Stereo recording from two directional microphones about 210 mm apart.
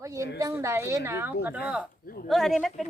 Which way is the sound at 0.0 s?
15° right (ahead or behind).